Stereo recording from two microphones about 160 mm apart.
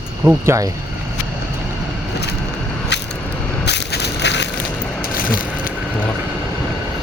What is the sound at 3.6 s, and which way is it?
Crushing, 90° left.